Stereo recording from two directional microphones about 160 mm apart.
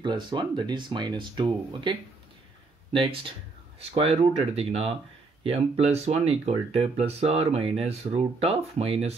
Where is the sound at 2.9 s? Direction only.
30° right (ahead or behind).